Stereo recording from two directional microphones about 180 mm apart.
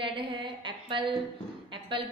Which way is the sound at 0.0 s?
30° right (ahead or behind).